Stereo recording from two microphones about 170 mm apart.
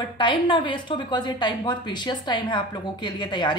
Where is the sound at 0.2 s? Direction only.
30° left (ahead or behind).